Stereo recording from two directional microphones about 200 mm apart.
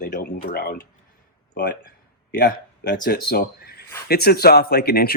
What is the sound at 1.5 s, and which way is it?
Speech, 60° left (ahead or behind).